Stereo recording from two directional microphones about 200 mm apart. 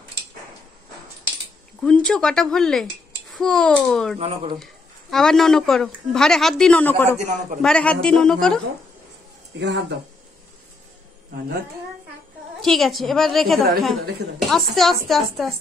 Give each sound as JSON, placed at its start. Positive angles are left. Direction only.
{"t": 1.8, "sound": "a woman's voice", "side_deg": 5}
{"t": 4.2, "sound": "speech", "side_deg": -30}
{"t": 5.1, "sound": "a woman's voice", "side_deg": 0}
{"t": 9.6, "sound": "speech", "side_deg": -60}
{"t": 12.6, "sound": "a woman's voice", "side_deg": 0}